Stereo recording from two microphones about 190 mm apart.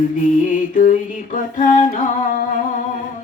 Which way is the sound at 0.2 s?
45° left (ahead or behind).